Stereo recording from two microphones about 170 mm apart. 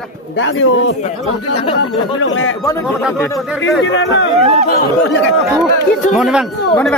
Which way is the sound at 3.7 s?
90° left.